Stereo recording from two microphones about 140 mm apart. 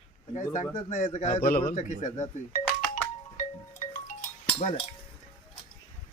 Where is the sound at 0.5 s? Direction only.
65° left (ahead or behind).